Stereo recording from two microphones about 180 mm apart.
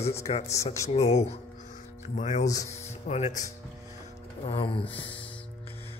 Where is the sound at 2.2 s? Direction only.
40° left (ahead or behind).